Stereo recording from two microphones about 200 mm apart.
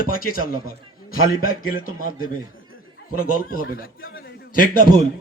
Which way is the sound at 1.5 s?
90° left.